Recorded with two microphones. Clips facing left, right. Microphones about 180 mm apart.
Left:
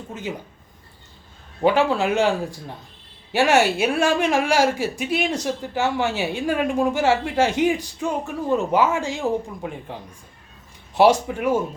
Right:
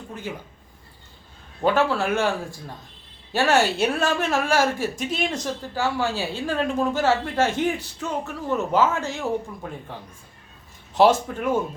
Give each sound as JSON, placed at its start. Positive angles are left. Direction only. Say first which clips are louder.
{"t": 1.6, "sound": "a woman's voice", "louder": "left 2 dB", "side_deg": 15}
{"t": 10.9, "sound": "a woman's voice", "louder": "left 2 dB", "side_deg": 10}